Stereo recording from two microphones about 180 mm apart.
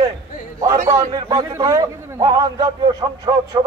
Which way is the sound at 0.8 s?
20° right (ahead or behind).